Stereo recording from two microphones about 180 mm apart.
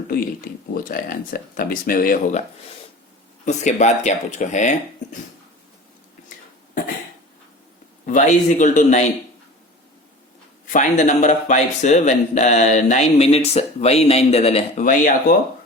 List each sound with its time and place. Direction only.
0.1 s speech: 55° left (ahead or behind)
3.4 s speech: 40° left (ahead or behind)
8.0 s speech: 45° left (ahead or behind)
10.7 s speech: 45° left (ahead or behind)